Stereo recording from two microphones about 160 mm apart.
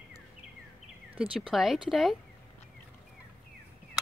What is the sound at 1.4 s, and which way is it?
Speech, centre (ahead or behind).